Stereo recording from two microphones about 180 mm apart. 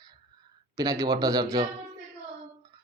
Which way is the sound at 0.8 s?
20° right (ahead or behind).